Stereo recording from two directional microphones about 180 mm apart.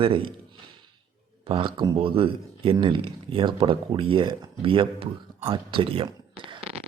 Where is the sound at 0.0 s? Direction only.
30° right (ahead or behind).